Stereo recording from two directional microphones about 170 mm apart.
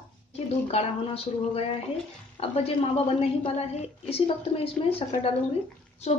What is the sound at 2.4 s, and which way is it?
Speech, 35° left (ahead or behind).